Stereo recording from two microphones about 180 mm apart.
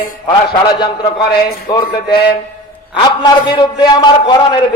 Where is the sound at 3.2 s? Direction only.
25° left (ahead or behind).